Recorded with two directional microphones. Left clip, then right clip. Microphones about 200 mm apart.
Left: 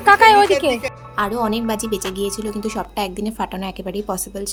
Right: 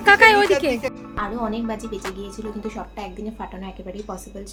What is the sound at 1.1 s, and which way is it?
A woman's voice, 50° left (ahead or behind).